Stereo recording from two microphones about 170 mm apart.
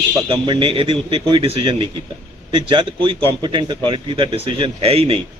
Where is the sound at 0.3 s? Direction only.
30° right (ahead or behind).